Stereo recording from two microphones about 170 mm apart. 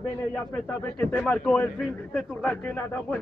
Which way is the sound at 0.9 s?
10° left (ahead or behind).